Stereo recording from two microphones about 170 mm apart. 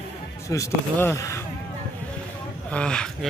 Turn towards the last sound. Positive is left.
turn(degrees=5)  # may be behind; listen again after turning